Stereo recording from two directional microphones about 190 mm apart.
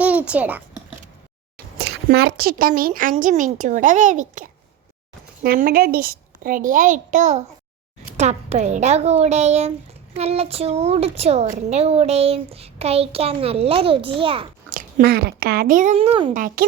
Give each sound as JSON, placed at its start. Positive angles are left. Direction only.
{"t": 0.0, "sound": "a sound", "side_deg": -5}
{"t": 1.8, "sound": "a woman's voice", "side_deg": -55}
{"t": 14.7, "sound": "speech", "side_deg": -45}
{"t": 16.3, "sound": "a woman's voice", "side_deg": -45}